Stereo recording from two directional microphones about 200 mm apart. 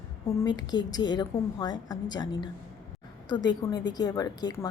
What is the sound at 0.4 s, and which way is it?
Speech, 20° left (ahead or behind).